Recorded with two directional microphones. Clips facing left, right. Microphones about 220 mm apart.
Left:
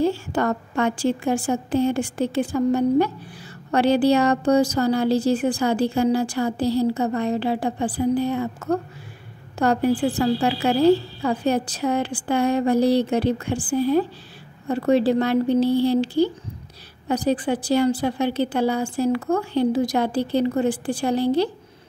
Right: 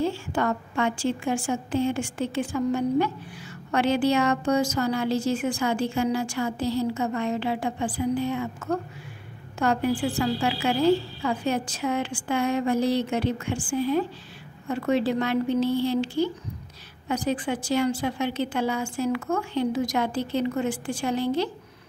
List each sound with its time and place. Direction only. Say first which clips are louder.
0.0 s a woman's voice: left 4 dB; 40° left (ahead or behind)